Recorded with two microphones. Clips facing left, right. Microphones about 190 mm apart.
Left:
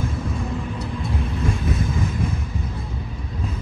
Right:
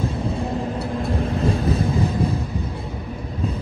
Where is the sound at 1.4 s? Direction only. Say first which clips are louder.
Right 4 dB; 35° right (ahead or behind).